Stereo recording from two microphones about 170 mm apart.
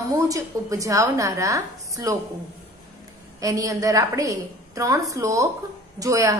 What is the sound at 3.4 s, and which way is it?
A woman's voice, 20° right (ahead or behind).